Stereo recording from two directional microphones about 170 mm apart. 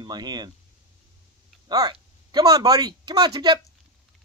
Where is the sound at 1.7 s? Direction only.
25° right (ahead or behind).